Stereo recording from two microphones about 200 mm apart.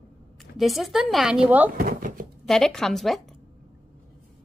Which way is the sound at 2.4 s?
5° left (ahead or behind).